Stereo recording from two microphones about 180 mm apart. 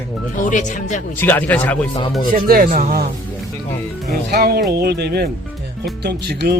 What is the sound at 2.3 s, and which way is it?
Speech, 55° right (ahead or behind).